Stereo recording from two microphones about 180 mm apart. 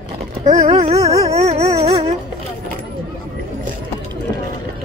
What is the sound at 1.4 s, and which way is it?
Dog, 35° right (ahead or behind).